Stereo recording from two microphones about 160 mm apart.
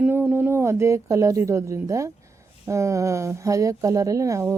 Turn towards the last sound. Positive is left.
turn(degrees=-20)  # may be behind; listen again after turning